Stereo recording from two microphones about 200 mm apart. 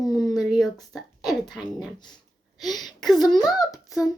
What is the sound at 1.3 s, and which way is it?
Speech, centre (ahead or behind).